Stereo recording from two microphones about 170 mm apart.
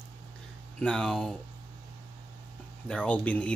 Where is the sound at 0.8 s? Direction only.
5° left (ahead or behind).